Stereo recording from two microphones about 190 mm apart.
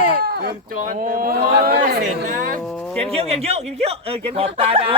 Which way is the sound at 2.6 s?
5° left (ahead or behind).